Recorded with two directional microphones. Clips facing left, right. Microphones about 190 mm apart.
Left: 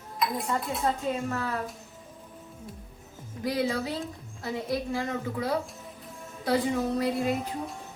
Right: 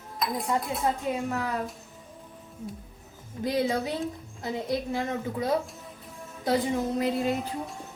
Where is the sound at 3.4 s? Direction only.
20° right (ahead or behind).